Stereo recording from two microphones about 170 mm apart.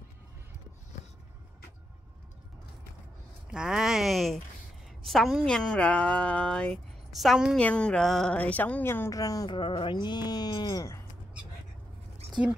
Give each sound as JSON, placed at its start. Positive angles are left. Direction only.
{"t": 3.5, "sound": "a woman's voice", "side_deg": -5}